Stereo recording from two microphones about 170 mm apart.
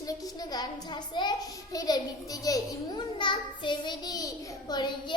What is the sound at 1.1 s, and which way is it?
A child's voice, 25° left (ahead or behind).